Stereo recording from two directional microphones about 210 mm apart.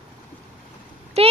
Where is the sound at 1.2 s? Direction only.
30° right (ahead or behind).